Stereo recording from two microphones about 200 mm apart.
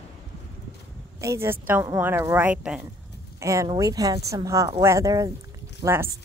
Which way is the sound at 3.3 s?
15° right (ahead or behind).